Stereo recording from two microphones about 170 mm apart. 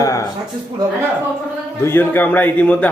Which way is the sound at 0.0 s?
20° left (ahead or behind).